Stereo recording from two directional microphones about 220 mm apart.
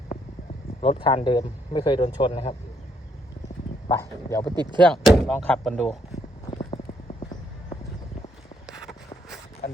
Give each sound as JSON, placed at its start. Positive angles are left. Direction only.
{"t": 0.8, "sound": "speech", "side_deg": 25}
{"t": 3.8, "sound": "speech", "side_deg": 15}
{"t": 4.5, "sound": "speech", "side_deg": -20}
{"t": 4.8, "sound": "speech", "side_deg": 0}
{"t": 6.5, "sound": "clip-clop", "side_deg": 20}